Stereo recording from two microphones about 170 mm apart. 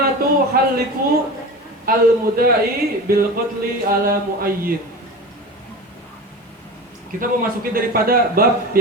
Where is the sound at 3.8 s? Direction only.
60° right (ahead or behind).